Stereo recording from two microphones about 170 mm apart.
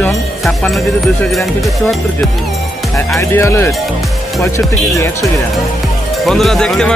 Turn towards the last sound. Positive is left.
turn(degrees=5)  # may be behind; listen again after turning